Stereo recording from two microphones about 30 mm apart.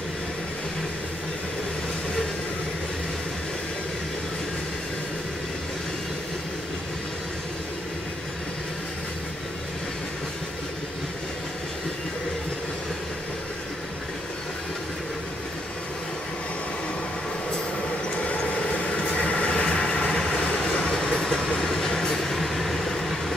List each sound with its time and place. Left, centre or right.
18.1 s vehicle: left
18.6 s train: left
19.5 s vehicle: left
20.2 s train: left
21.1 s vehicle: left
21.6 s train: centre